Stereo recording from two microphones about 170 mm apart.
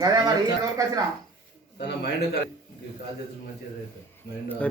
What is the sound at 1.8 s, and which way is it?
Speech, 85° left.